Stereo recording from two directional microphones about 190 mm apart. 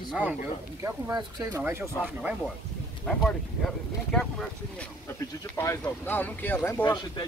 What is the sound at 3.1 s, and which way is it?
Speech, 5° left (ahead or behind).